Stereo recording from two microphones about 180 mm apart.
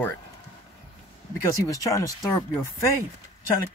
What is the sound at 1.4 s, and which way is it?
Speech, 20° left (ahead or behind).